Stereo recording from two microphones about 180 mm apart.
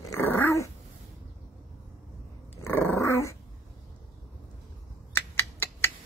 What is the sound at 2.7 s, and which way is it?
Dog, 15° left (ahead or behind).